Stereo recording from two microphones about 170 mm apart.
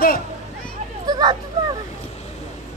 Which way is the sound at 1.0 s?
25° right (ahead or behind).